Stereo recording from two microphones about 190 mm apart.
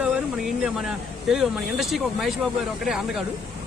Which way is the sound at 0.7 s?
Centre (ahead or behind).